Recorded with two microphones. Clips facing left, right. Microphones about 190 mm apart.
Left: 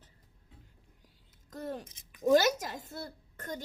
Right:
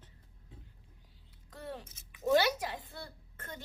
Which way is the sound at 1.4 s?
45° left (ahead or behind).